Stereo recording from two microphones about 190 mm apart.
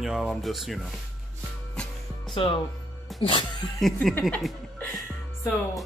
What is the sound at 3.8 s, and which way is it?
Speech, centre (ahead or behind).